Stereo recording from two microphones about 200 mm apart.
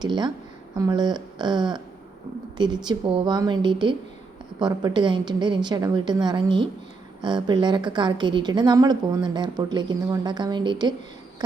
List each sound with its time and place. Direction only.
0.0 s a woman's voice: 20° right (ahead or behind)